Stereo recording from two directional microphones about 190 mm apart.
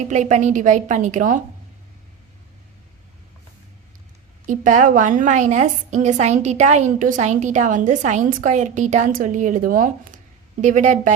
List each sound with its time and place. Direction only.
0.1 s a woman's voice: 40° right (ahead or behind)
4.4 s a woman's voice: 40° right (ahead or behind)